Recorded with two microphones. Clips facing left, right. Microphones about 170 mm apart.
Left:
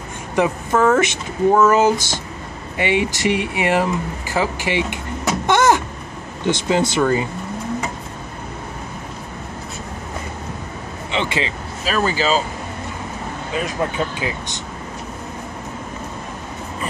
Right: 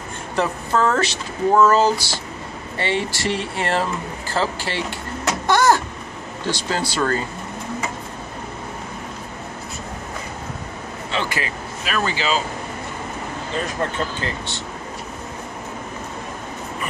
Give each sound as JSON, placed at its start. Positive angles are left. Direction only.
{"t": 0.4, "sound": "speech", "side_deg": 15}
{"t": 5.5, "sound": "a sound", "side_deg": 20}
{"t": 6.4, "sound": "speech", "side_deg": 20}
{"t": 11.1, "sound": "speech", "side_deg": 25}
{"t": 13.5, "sound": "speech", "side_deg": 10}